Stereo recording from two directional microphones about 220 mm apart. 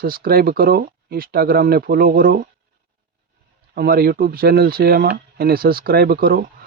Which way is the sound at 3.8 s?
45° right (ahead or behind).